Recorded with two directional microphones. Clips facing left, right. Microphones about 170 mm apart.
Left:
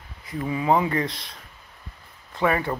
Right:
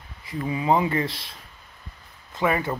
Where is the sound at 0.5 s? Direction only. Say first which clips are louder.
Even; 15° right (ahead or behind).